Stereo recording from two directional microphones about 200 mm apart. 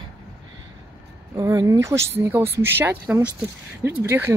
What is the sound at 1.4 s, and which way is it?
Speech, 15° right (ahead or behind).